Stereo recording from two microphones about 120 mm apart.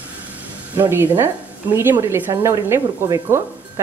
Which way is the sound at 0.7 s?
15° right (ahead or behind).